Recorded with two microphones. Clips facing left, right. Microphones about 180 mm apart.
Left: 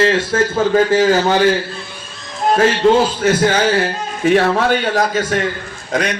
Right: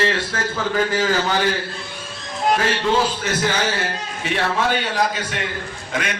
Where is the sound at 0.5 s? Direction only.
40° left (ahead or behind).